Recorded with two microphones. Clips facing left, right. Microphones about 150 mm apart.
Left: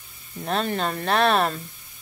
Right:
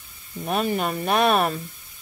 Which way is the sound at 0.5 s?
10° right (ahead or behind).